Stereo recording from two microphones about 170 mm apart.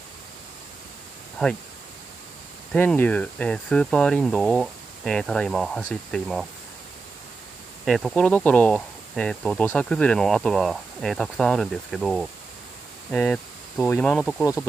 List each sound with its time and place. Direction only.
1.4 s speech: 5° left (ahead or behind)
2.7 s speech: 10° left (ahead or behind)
7.8 s speech: centre (ahead or behind)
14.4 s speech: 20° left (ahead or behind)